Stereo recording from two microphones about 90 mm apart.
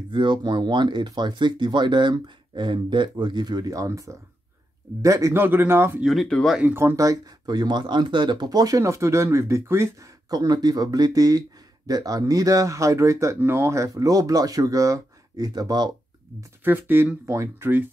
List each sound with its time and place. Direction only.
0.1 s speech: 60° right (ahead or behind); by 5.3 s 35° right (ahead or behind)
5.3 s speech: 25° right (ahead or behind)
6.2 s speech: 10° left (ahead or behind)
6.6 s speech: 25° right (ahead or behind)
7.0 s speech: 45° right (ahead or behind); by 9.8 s 30° right (ahead or behind)
10.3 s speech: 50° right (ahead or behind)
16.6 s speech: 20° right (ahead or behind)